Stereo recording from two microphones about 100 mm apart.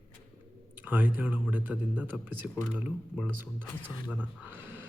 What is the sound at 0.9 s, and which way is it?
Speech, 15° right (ahead or behind).